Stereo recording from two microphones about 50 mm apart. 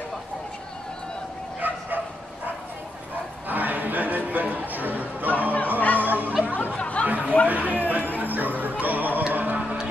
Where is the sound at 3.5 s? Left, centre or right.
Right.